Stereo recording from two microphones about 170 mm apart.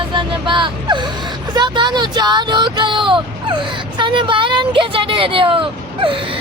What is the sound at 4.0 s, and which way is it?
Speech, 30° right (ahead or behind).